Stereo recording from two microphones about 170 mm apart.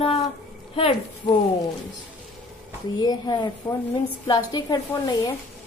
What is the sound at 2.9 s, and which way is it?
A woman's voice, 25° left (ahead or behind).